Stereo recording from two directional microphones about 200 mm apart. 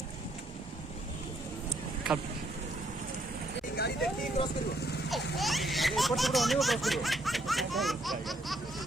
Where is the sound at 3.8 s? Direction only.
50° left (ahead or behind).